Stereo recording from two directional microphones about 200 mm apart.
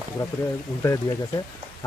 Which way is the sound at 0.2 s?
20° left (ahead or behind).